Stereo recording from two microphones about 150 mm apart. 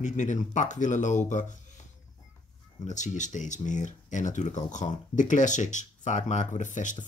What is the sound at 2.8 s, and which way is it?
Speech, 55° left (ahead or behind).